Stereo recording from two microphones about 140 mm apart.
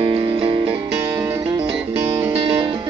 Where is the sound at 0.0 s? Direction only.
35° right (ahead or behind).